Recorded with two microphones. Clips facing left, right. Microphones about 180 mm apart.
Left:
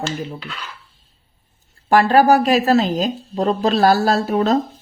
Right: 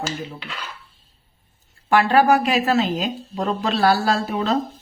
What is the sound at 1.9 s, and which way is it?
Speech, 40° left (ahead or behind).